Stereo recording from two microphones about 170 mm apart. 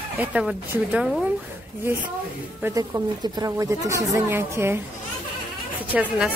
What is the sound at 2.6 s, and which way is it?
A woman's voice, 20° right (ahead or behind).